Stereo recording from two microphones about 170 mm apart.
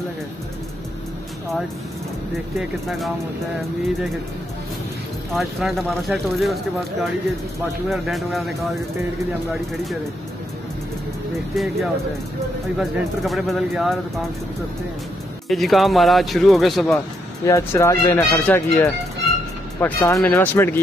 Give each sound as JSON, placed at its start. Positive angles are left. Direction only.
{"t": 5.3, "sound": "speech", "side_deg": 0}
{"t": 11.5, "sound": "speech", "side_deg": 0}
{"t": 15.4, "sound": "speech", "side_deg": 0}
{"t": 17.5, "sound": "speech", "side_deg": 20}